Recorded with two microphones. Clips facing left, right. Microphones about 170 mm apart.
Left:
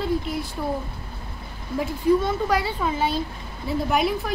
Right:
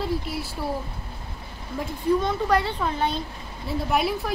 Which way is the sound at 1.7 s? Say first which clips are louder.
Left 3 dB; 5° left (ahead or behind).